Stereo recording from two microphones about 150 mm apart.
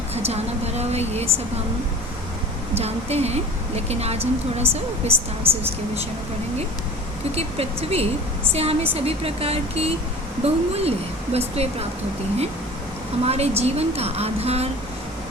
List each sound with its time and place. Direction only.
0.1 s a woman's voice: 45° right (ahead or behind)
2.7 s speech: 45° right (ahead or behind)
7.3 s speech: 40° right (ahead or behind)
13.2 s speech: 45° right (ahead or behind)